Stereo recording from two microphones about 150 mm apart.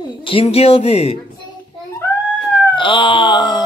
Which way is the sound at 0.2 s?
40° left (ahead or behind).